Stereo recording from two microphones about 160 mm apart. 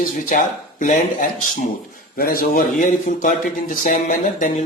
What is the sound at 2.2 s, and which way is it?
Speech, 65° left (ahead or behind).